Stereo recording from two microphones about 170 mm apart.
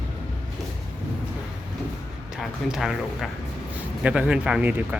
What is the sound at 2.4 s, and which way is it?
Speech, centre (ahead or behind).